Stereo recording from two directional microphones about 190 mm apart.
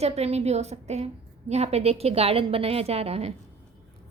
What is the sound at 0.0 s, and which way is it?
A woman's voice, 35° right (ahead or behind).